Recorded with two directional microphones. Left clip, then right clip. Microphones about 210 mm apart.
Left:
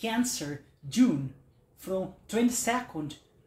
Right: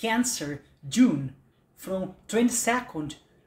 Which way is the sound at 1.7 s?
25° right (ahead or behind).